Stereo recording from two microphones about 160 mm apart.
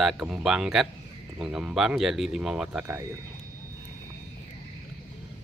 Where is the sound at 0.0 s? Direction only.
5° right (ahead or behind).